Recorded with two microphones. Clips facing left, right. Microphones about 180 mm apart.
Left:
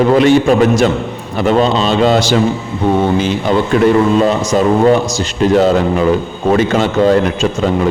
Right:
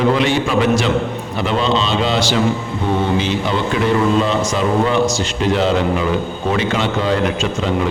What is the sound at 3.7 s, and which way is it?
A man's voice, 50° left (ahead or behind).